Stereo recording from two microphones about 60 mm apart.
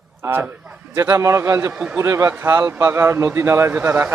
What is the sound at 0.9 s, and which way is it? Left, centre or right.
A man's voice, right.